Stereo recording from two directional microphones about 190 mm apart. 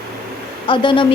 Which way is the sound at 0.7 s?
25° left (ahead or behind).